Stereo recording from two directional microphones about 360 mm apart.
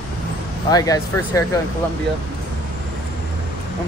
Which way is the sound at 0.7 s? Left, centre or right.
Centre.